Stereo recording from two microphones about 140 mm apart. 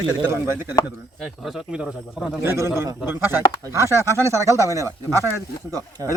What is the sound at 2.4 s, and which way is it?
Speech, 15° right (ahead or behind).